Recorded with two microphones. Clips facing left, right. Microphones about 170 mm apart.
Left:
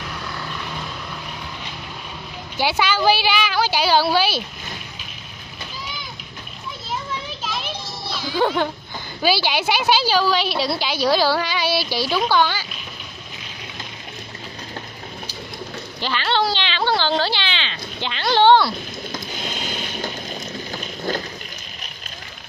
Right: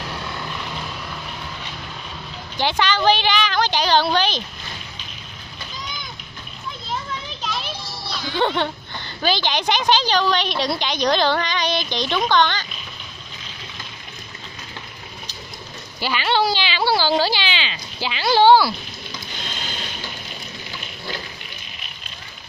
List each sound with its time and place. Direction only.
2.5 s a woman's voice: 10° left (ahead or behind)
8.1 s music: 5° left (ahead or behind)
9.2 s a woman's voice: 10° left (ahead or behind)
16.0 s speech: 10° right (ahead or behind)
20.7 s a sound: 45° left (ahead or behind)